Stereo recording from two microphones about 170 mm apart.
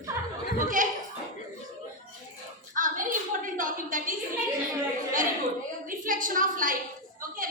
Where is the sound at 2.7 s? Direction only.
50° right (ahead or behind).